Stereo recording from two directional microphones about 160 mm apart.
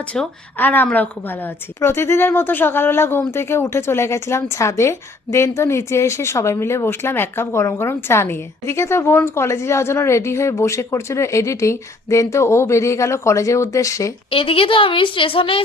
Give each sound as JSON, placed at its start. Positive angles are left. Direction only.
{"t": 0.1, "sound": "speech", "side_deg": 10}
{"t": 14.3, "sound": "a woman's voice", "side_deg": 35}